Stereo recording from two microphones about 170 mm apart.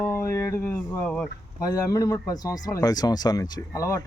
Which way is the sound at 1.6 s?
20° left (ahead or behind).